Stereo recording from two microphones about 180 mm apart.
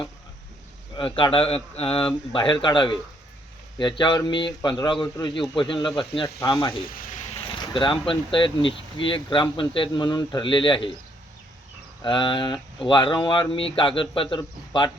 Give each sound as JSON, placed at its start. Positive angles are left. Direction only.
{"t": 0.9, "sound": "speech", "side_deg": 30}
{"t": 12.0, "sound": "speech", "side_deg": 25}